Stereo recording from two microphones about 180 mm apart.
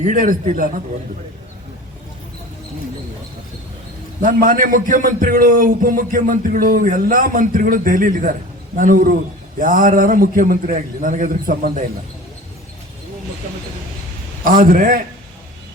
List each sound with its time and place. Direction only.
0.0 s a man's voice: 45° right (ahead or behind)
4.2 s a man's voice: 50° right (ahead or behind)
14.4 s a man's voice: 50° right (ahead or behind)